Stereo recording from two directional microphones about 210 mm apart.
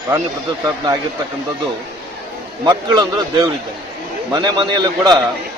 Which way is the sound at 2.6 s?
20° right (ahead or behind).